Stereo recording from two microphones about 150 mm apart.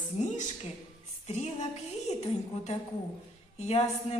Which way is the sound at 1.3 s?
50° left (ahead or behind).